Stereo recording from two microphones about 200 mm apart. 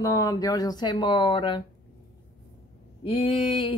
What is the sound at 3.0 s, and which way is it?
Speech, 25° left (ahead or behind).